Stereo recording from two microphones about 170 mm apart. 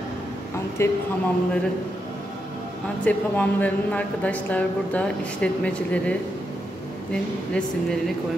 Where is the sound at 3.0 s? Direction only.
10° left (ahead or behind).